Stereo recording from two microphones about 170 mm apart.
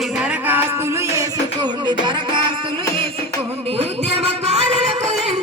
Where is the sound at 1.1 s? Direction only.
25° right (ahead or behind).